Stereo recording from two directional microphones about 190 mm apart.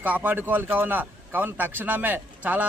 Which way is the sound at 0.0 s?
10° right (ahead or behind).